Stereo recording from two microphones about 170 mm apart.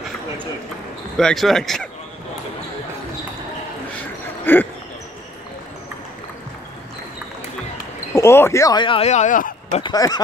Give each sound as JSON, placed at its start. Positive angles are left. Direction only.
{"t": 1.1, "sound": "speech", "side_deg": 0}
{"t": 4.5, "sound": "speech", "side_deg": 10}
{"t": 8.1, "sound": "speech", "side_deg": 15}
{"t": 9.8, "sound": "speech", "side_deg": 25}